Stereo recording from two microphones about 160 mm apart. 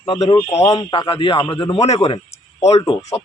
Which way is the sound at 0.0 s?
25° left (ahead or behind).